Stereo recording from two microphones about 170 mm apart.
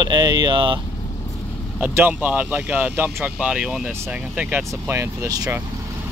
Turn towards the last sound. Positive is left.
turn(degrees=-20)  # may be behind; listen again after turning